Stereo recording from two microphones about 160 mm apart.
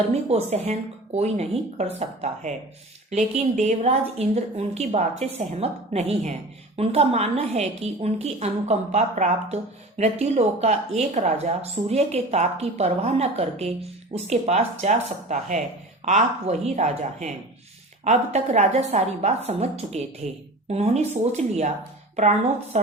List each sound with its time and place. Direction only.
0.1 s a woman's voice: 40° right (ahead or behind)